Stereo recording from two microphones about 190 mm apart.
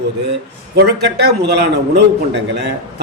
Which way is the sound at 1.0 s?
60° right (ahead or behind).